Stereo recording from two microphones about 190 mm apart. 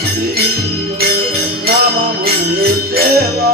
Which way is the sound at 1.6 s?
55° right (ahead or behind).